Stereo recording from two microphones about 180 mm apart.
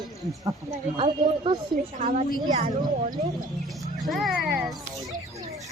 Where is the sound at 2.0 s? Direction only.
50° right (ahead or behind).